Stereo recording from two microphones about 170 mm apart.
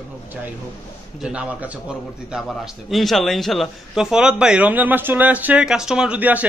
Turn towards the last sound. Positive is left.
turn(degrees=-10)  # may be behind; listen again after turning